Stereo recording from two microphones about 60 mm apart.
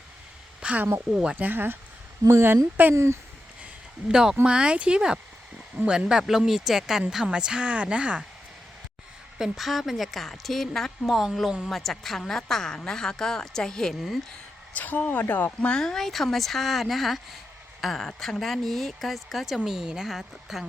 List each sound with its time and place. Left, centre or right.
0.6 s a sound: right
1.1 s speech: centre
1.4 s speech: right
4.1 s speech: centre
9.4 s speech: centre
14.7 s speech: left
15.7 s speech: centre